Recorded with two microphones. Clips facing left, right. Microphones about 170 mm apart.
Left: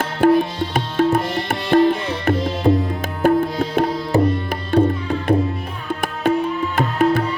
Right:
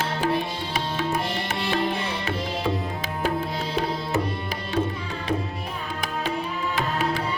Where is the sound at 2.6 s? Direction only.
40° left (ahead or behind).